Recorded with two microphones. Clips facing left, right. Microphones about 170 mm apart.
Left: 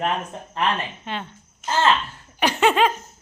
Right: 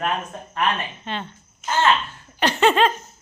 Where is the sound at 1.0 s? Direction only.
10° left (ahead or behind).